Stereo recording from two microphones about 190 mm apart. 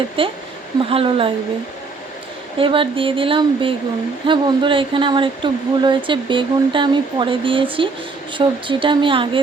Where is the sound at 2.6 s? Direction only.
25° right (ahead or behind).